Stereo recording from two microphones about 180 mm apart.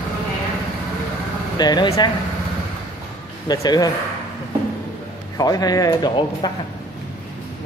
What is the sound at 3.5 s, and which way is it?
Speech, 20° left (ahead or behind).